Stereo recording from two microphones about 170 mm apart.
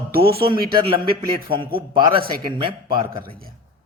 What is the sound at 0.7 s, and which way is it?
A man's voice, 30° right (ahead or behind).